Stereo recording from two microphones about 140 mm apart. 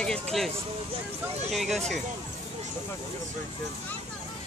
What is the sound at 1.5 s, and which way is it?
Speech, centre (ahead or behind).